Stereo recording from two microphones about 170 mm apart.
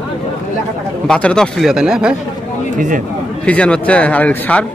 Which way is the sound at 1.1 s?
5° left (ahead or behind).